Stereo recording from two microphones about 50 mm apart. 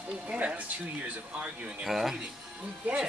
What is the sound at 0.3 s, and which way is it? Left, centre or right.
Speech, right.